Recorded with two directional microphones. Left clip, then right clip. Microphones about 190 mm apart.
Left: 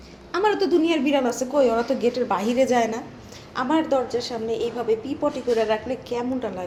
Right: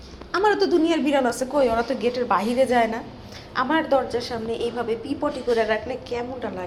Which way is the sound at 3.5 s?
10° left (ahead or behind).